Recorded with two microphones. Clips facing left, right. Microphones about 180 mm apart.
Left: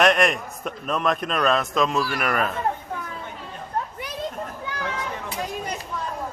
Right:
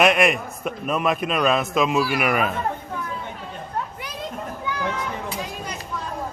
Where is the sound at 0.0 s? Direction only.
5° right (ahead or behind).